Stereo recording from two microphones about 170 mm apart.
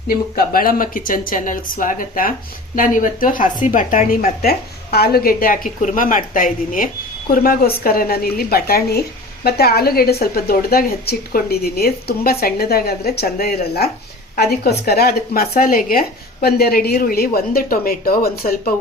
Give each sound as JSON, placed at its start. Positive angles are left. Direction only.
{"t": 0.3, "sound": "a woman's voice", "side_deg": 60}